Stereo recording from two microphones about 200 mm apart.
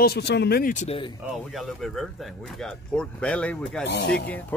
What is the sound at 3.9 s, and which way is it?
Speech, 60° left (ahead or behind).